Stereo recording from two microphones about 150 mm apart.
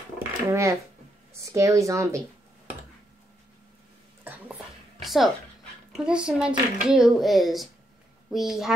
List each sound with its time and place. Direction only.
0.5 s speech: 20° right (ahead or behind)
4.2 s a sound: 10° right (ahead or behind)
5.0 s dog: centre (ahead or behind)
5.9 s speech: 5° right (ahead or behind)